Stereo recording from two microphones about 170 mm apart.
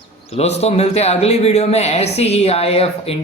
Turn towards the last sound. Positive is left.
turn(degrees=35)  # may be behind; listen again after turning